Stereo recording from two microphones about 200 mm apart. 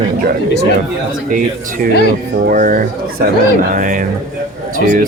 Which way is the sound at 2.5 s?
45° right (ahead or behind).